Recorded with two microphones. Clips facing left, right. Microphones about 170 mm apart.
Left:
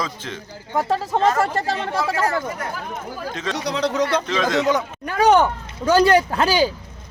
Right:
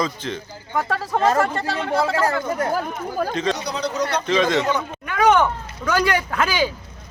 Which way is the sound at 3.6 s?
90° left.